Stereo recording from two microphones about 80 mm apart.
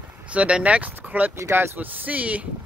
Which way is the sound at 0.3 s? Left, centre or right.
Centre.